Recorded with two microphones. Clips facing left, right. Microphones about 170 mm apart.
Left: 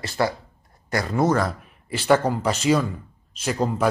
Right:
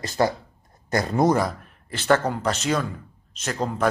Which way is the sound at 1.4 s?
5° left (ahead or behind).